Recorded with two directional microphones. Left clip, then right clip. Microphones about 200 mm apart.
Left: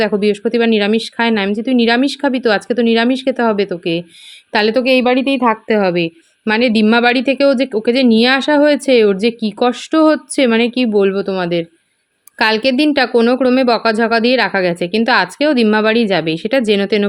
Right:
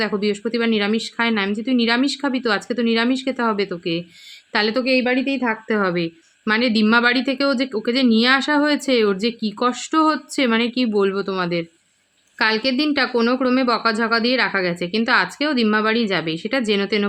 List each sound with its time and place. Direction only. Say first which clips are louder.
0.0 s a woman's voice: left 7 dB; 20° left (ahead or behind)